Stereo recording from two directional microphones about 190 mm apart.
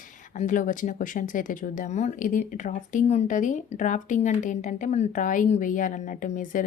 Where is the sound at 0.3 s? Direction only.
45° left (ahead or behind).